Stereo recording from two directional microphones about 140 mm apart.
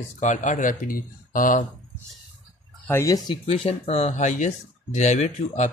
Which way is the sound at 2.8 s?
20° left (ahead or behind).